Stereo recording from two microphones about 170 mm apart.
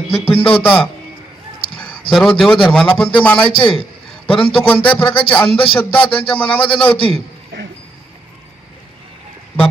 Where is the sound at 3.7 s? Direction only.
35° left (ahead or behind).